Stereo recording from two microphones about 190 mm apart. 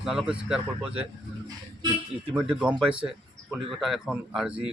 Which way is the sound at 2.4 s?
5° right (ahead or behind).